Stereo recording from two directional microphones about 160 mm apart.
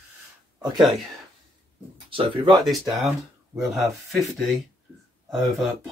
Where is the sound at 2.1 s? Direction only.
35° right (ahead or behind).